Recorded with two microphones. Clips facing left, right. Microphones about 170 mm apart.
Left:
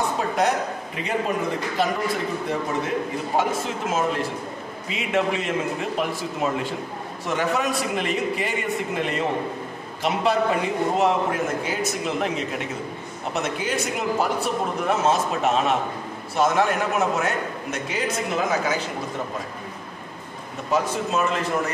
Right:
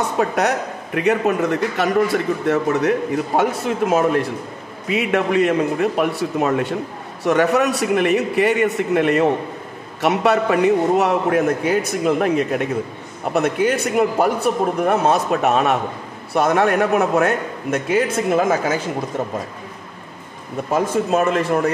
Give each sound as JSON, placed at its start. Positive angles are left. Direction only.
{"t": 0.2, "sound": "a man's voice", "side_deg": -65}
{"t": 3.3, "sound": "a man's voice", "side_deg": -60}
{"t": 20.7, "sound": "a man's voice", "side_deg": -55}